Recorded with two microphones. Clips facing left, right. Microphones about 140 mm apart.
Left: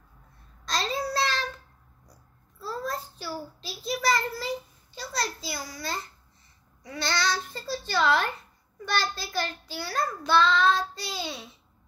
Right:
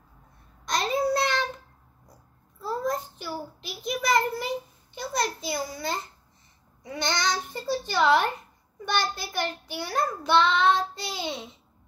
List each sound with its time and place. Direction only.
0.7 s child singing: 20° right (ahead or behind)
2.6 s a child's voice: 15° right (ahead or behind)